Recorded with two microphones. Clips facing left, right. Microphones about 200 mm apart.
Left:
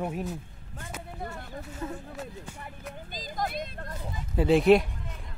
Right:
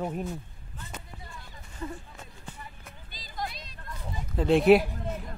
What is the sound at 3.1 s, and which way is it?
Vehicle, 45° left (ahead or behind).